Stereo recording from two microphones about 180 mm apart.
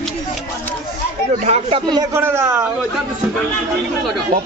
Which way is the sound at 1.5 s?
30° right (ahead or behind).